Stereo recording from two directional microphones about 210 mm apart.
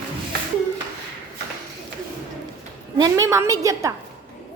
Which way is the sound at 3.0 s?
15° right (ahead or behind).